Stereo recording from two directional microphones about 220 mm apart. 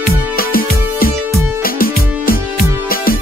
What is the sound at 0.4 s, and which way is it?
Music, 40° left (ahead or behind).